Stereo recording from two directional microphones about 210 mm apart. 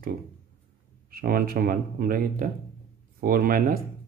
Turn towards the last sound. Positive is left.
turn(degrees=-45)  # may be behind; listen again after turning